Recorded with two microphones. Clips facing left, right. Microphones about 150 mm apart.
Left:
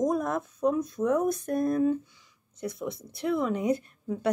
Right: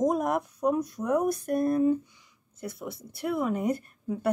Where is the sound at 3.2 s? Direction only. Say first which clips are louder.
Left 1 dB; 10° right (ahead or behind).